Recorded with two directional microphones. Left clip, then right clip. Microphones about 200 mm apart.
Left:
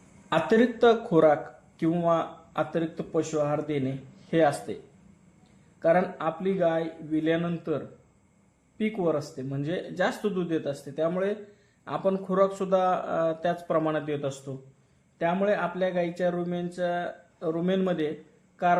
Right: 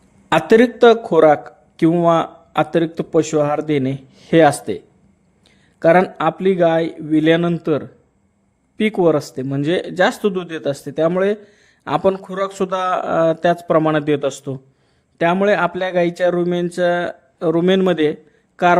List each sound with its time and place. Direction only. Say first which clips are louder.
0.3 s speech: right 10 dB; 40° right (ahead or behind)
5.8 s speech: right 11 dB; 50° right (ahead or behind)
8.8 s speech: right 12 dB; 50° right (ahead or behind)